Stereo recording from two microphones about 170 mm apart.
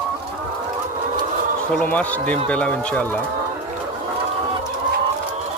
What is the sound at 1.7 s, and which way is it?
Speech, 10° left (ahead or behind).